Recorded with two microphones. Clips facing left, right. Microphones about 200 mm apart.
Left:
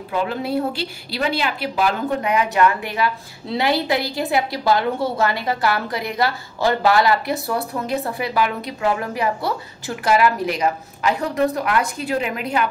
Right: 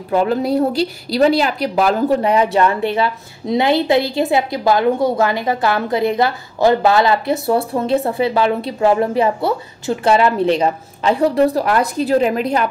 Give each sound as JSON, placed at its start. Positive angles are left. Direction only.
{"t": 0.1, "sound": "a woman's voice", "side_deg": -45}